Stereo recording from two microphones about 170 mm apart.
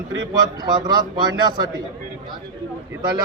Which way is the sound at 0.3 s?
25° right (ahead or behind).